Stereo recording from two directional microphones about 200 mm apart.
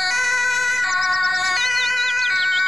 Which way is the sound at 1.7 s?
Centre (ahead or behind).